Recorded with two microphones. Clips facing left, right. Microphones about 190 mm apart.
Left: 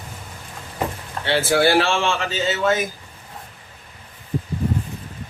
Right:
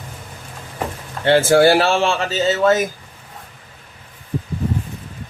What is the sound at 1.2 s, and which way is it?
Speech, 50° right (ahead or behind).